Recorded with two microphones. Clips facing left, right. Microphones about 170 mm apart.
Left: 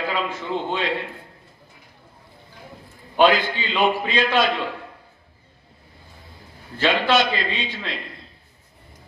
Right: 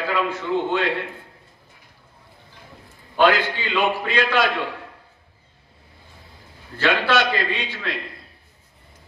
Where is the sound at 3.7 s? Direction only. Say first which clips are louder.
Left 1 dB; 15° left (ahead or behind).